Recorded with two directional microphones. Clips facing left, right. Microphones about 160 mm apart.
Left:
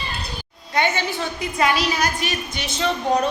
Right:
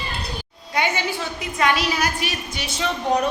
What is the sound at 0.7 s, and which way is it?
A woman's voice, 10° right (ahead or behind).